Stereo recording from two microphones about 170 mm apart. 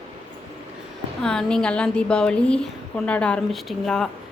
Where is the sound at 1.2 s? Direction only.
5° left (ahead or behind).